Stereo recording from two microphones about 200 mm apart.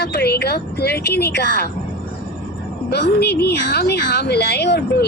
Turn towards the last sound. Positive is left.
turn(degrees=55)  # may be behind; listen again after turning